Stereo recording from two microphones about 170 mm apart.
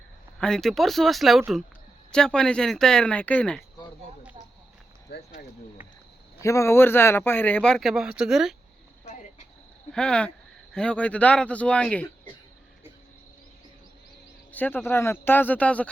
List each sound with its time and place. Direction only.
0.3 s speech: 5° left (ahead or behind)
5.1 s speech: 70° left (ahead or behind)
6.4 s speech: 20° left (ahead or behind); by 8.5 s 5° right (ahead or behind)
9.9 s speech: 5° left (ahead or behind)
14.5 s speech: 10° left (ahead or behind)